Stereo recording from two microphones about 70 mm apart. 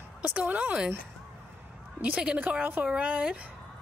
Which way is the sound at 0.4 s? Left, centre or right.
Centre.